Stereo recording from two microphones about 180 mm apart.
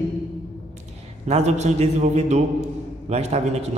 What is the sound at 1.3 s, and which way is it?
A man's voice, 40° right (ahead or behind).